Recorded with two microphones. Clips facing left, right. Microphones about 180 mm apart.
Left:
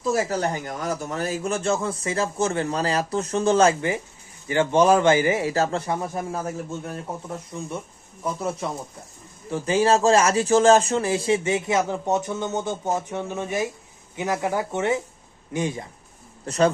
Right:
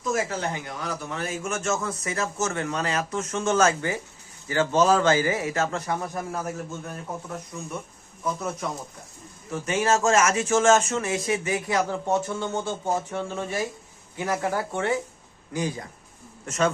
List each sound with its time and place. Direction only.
0.0 s speech: 35° left (ahead or behind)
4.4 s a man's voice: 15° left (ahead or behind)
7.5 s a man's voice: 30° left (ahead or behind)
16.5 s speech: 35° left (ahead or behind)